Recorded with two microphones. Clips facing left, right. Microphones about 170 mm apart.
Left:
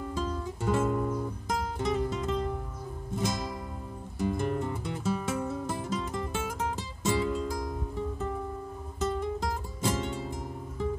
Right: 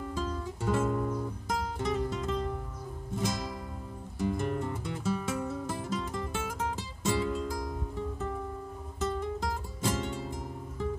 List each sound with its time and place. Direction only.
0.1 s music: 15° left (ahead or behind)
9.0 s music: 20° left (ahead or behind)